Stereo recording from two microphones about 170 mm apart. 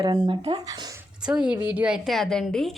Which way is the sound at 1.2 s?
5° right (ahead or behind).